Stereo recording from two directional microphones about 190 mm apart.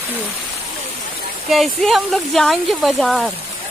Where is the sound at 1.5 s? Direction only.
Centre (ahead or behind).